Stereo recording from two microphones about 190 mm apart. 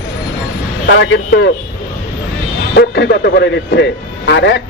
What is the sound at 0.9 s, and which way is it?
Speech, 65° left (ahead or behind).